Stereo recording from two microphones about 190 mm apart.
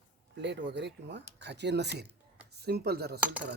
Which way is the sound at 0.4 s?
65° right (ahead or behind).